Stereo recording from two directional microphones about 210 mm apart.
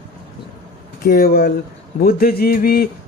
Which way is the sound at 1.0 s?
45° left (ahead or behind).